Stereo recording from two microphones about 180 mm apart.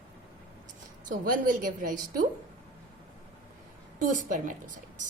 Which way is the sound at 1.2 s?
50° right (ahead or behind).